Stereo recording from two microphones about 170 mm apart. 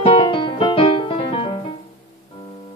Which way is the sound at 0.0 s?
30° left (ahead or behind).